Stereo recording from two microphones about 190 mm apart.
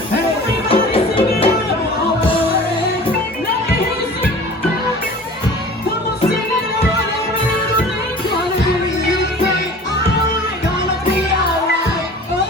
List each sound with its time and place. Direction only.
0.7 s music: 30° left (ahead or behind)